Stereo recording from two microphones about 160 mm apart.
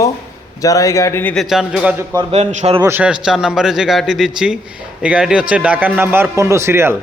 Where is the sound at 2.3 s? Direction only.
40° right (ahead or behind).